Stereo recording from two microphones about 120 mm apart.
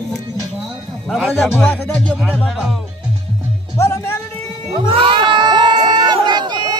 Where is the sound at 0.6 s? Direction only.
Centre (ahead or behind).